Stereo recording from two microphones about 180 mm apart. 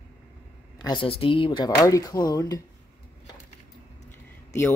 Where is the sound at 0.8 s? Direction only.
25° left (ahead or behind).